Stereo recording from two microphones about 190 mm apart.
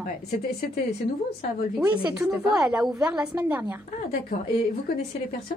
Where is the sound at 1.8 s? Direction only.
10° right (ahead or behind).